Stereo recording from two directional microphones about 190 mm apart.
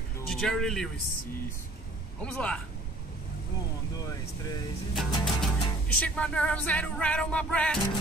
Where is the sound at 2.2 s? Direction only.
5° left (ahead or behind).